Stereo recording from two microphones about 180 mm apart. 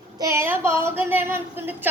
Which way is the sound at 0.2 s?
15° right (ahead or behind).